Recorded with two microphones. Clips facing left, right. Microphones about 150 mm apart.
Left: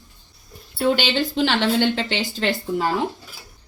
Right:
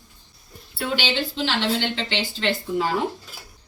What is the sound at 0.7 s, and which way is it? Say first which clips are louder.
Speech: left 5 dB; 45° left (ahead or behind).